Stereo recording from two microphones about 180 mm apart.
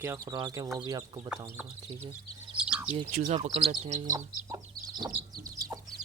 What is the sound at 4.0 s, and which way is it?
Chicken, 20° right (ahead or behind).